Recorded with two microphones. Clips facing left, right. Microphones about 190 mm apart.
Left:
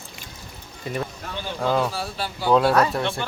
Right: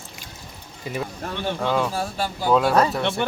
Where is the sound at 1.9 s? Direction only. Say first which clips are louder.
Right 3 dB; 45° right (ahead or behind).